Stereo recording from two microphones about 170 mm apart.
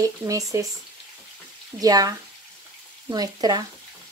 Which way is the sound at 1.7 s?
20° right (ahead or behind).